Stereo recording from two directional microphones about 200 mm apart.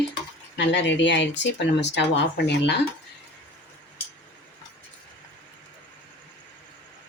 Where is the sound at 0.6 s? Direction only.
65° left (ahead or behind).